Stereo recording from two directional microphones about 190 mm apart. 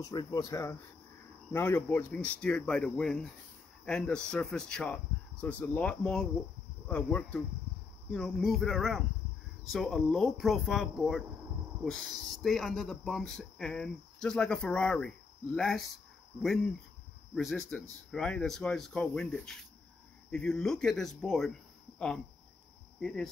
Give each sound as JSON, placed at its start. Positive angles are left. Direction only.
{"t": 0.0, "sound": "speech", "side_deg": 20}
{"t": 17.4, "sound": "speech", "side_deg": 0}